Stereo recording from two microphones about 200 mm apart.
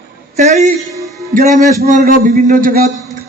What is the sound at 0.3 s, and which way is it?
A man's voice, 35° right (ahead or behind).